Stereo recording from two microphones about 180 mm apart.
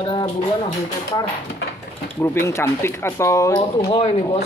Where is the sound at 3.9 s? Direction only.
35° left (ahead or behind).